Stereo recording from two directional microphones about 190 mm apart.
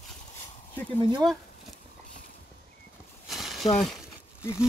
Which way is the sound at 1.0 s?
25° right (ahead or behind).